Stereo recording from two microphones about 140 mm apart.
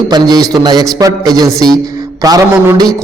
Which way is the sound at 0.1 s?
25° right (ahead or behind).